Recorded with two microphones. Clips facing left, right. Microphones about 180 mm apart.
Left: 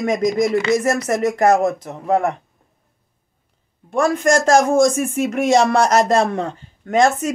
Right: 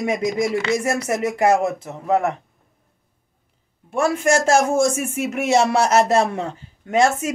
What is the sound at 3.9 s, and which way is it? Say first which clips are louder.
Speech: left 2 dB; 5° right (ahead or behind).